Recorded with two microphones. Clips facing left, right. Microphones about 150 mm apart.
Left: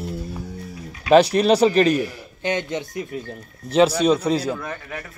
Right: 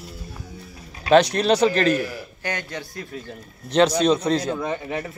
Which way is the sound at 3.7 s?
5° left (ahead or behind).